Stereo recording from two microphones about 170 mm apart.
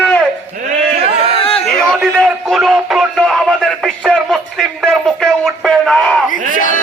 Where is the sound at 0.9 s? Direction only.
35° right (ahead or behind).